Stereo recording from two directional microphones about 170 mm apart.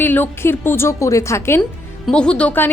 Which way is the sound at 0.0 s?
10° left (ahead or behind).